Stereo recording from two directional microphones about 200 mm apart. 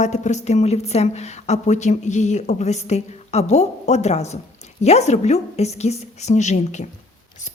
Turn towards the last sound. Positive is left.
turn(degrees=35)  # may be behind; listen again after turning